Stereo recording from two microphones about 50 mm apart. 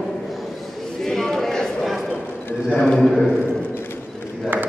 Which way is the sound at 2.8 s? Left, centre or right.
Centre.